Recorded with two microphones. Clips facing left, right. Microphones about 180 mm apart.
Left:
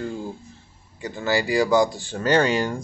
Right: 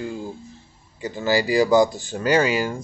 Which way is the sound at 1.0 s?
20° right (ahead or behind).